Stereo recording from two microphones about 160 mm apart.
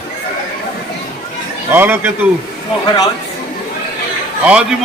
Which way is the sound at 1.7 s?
10° right (ahead or behind).